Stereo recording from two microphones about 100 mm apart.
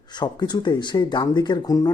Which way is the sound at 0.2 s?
45° left (ahead or behind).